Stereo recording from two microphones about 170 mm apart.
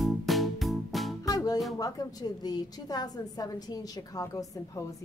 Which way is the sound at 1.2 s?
20° left (ahead or behind).